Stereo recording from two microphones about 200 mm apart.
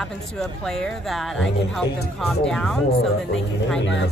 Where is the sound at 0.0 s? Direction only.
Centre (ahead or behind).